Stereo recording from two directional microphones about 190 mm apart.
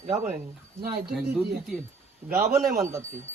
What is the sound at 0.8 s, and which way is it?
Speech, 55° right (ahead or behind).